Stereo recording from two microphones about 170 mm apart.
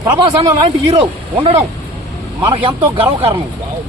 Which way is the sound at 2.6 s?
30° right (ahead or behind).